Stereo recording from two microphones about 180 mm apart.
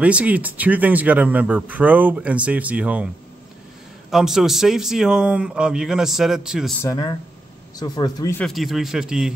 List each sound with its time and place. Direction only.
0.0 s speech: 10° right (ahead or behind)
4.1 s a man's voice: centre (ahead or behind)
6.8 s speech: 20° left (ahead or behind)
8.4 s a man's voice: centre (ahead or behind)